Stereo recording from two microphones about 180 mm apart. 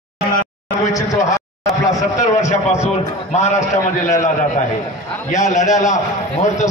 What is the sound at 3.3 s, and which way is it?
Speech, 40° left (ahead or behind).